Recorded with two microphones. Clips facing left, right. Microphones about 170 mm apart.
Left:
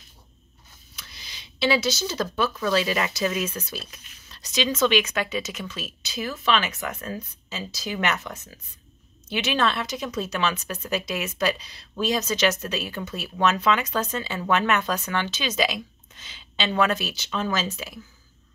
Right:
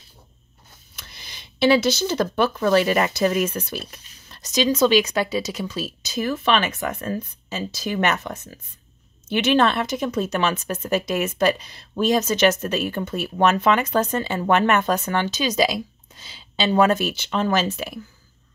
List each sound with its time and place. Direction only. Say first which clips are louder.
0.9 s speech: right 2 dB; 55° right (ahead or behind)